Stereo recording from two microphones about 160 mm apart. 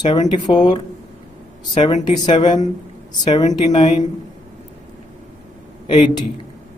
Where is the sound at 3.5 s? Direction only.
25° left (ahead or behind).